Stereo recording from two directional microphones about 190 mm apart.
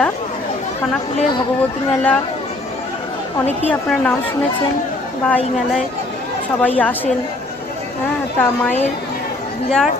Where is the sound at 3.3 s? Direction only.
10° left (ahead or behind).